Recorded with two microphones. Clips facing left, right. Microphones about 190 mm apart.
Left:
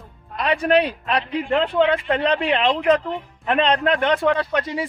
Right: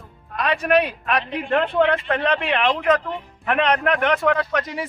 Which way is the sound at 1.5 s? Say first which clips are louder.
Even; 20° left (ahead or behind).